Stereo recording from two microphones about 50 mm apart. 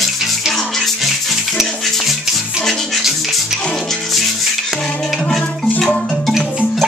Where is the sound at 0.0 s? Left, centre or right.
Centre.